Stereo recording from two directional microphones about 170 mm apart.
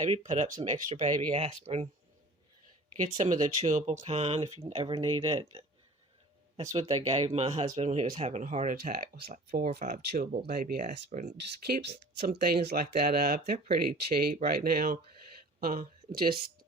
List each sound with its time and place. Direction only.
0.0 s speech: 45° right (ahead or behind)
3.0 s speech: 45° right (ahead or behind)
11.3 s speech: 70° right (ahead or behind)